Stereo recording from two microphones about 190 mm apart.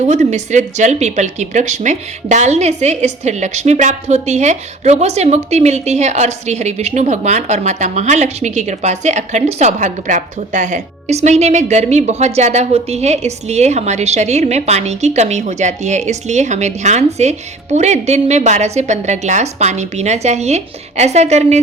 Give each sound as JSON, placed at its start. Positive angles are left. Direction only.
{"t": 0.0, "sound": "speech", "side_deg": -40}